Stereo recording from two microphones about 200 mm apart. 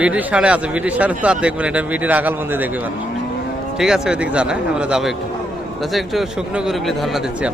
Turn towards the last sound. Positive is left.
turn(degrees=-5)  # may be behind; listen again after turning